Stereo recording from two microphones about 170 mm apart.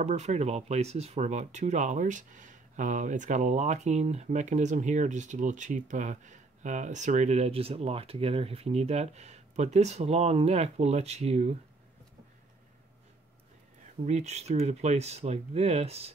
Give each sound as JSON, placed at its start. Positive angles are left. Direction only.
{"t": 0.0, "sound": "speech", "side_deg": -40}
{"t": 14.0, "sound": "speech", "side_deg": -40}